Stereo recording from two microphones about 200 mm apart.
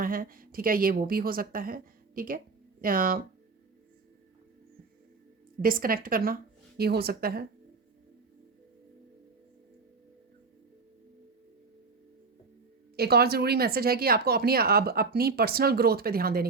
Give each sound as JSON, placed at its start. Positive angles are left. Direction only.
{"t": 0.0, "sound": "speech", "side_deg": -45}
{"t": 5.6, "sound": "speech", "side_deg": -45}
{"t": 13.0, "sound": "speech", "side_deg": -50}